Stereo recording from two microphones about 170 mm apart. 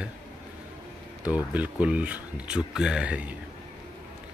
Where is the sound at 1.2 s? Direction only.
10° right (ahead or behind).